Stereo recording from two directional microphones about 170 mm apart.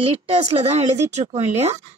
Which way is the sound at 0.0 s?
40° right (ahead or behind).